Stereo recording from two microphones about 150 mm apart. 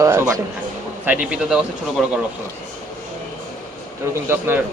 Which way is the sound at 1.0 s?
10° right (ahead or behind).